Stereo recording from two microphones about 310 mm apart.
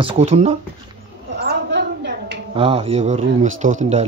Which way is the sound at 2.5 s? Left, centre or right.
Centre.